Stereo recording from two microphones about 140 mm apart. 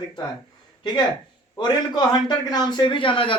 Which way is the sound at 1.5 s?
30° left (ahead or behind).